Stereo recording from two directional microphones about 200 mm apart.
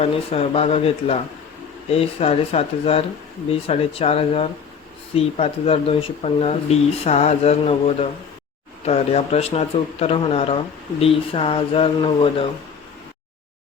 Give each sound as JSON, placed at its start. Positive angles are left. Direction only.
{"t": 0.0, "sound": "a man's voice", "side_deg": 30}